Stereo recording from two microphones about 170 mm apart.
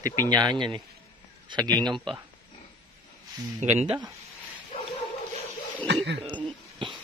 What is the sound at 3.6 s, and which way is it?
Speech, 40° right (ahead or behind).